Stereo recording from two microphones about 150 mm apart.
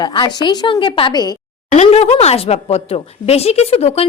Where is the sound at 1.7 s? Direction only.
45° left (ahead or behind).